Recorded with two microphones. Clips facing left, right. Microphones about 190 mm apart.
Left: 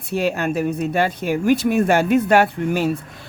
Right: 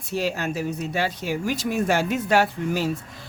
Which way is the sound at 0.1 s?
60° left (ahead or behind).